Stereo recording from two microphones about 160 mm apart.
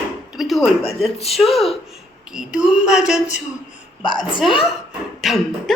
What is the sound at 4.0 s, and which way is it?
Speech, 30° left (ahead or behind).